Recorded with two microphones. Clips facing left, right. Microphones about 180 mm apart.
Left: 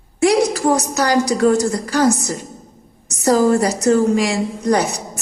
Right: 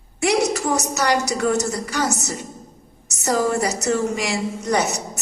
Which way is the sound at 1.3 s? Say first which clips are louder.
Left 6 dB; 30° left (ahead or behind).